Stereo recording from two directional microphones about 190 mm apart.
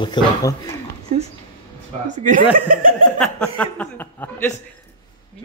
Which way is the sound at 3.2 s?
5° left (ahead or behind).